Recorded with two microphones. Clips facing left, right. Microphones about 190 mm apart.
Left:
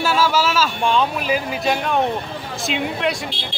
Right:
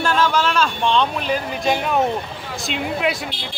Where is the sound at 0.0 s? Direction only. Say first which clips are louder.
Even; 5° left (ahead or behind).